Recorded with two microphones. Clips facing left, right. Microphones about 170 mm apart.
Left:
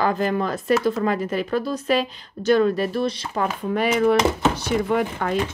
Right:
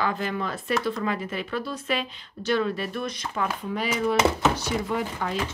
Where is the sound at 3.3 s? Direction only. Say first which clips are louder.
Left 2 dB; 50° left (ahead or behind).